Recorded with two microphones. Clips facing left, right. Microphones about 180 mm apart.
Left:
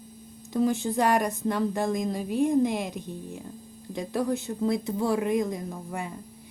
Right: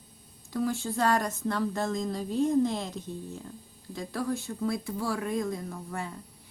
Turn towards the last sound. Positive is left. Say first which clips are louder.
# left 2 dB
turn(degrees=15)  # may be behind; listen again after turning